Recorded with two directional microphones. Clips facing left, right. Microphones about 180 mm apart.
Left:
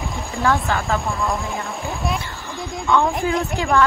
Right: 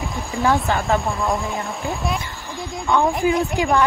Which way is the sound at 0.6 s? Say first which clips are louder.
Right 2 dB; 20° right (ahead or behind).